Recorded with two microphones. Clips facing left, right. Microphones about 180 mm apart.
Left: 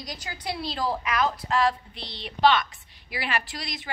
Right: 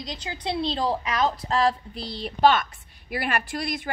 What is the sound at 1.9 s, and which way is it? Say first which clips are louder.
Speech: right 7 dB; 5° right (ahead or behind).